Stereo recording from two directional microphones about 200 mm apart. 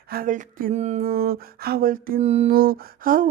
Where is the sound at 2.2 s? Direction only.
30° right (ahead or behind).